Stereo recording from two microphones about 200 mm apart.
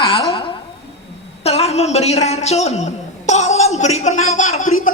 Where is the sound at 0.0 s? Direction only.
25° left (ahead or behind).